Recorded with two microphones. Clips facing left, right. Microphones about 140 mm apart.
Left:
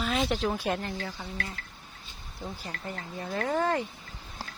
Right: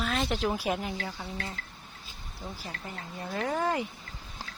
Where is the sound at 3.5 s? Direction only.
10° right (ahead or behind).